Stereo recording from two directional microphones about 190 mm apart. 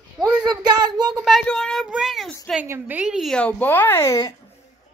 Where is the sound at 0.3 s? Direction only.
20° right (ahead or behind).